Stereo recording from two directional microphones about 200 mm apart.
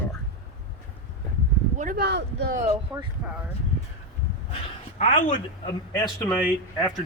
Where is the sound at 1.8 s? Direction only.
50° right (ahead or behind).